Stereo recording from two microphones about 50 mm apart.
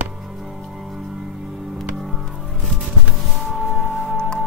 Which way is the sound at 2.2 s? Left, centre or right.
Centre.